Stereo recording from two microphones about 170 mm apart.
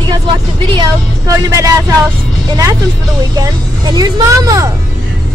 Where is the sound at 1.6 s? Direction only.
20° right (ahead or behind).